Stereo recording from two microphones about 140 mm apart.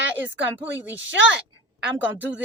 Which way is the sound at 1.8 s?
10° right (ahead or behind).